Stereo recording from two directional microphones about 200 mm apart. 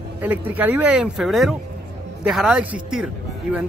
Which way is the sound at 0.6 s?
10° right (ahead or behind).